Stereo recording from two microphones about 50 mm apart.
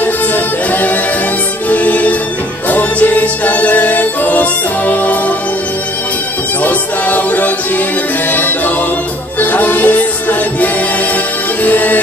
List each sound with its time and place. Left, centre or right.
0.7 s music: left
6.6 s music: left
11.6 s music: left